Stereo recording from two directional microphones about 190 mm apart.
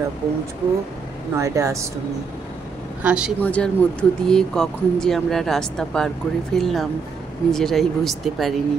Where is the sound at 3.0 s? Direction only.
5° right (ahead or behind).